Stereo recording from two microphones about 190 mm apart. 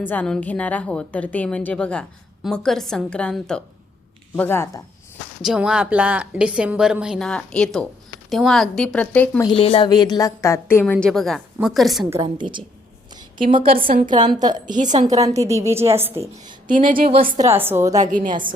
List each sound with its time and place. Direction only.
0.0 s a woman's voice: 10° left (ahead or behind)
5.4 s a woman's voice: 5° right (ahead or behind)
9.6 s a woman's voice: 30° left (ahead or behind); by 10.9 s 10° left (ahead or behind)
11.0 s a woman's voice: centre (ahead or behind)
12.1 s a woman's voice: 25° right (ahead or behind)
13.7 s a woman's voice: 50° right (ahead or behind)
14.3 s a woman's voice: 20° right (ahead or behind)
14.7 s a woman's voice: 40° right (ahead or behind)
15.2 s a woman's voice: 15° right (ahead or behind)
16.6 s a woman's voice: 45° right (ahead or behind)
17.5 s a woman's voice: 10° right (ahead or behind)
17.9 s a woman's voice: 40° right (ahead or behind)
18.3 s a woman's voice: 25° right (ahead or behind)